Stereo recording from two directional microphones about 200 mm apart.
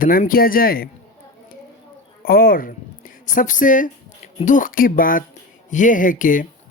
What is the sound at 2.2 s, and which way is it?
Speech, 45° left (ahead or behind).